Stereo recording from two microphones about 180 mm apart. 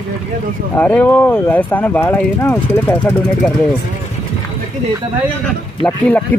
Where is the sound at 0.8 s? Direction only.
10° left (ahead or behind).